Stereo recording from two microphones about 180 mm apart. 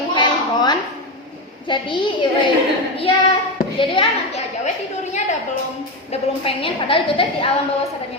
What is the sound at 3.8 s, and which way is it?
Speech, 30° left (ahead or behind).